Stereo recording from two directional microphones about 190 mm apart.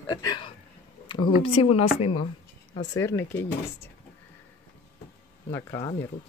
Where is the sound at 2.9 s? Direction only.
15° left (ahead or behind).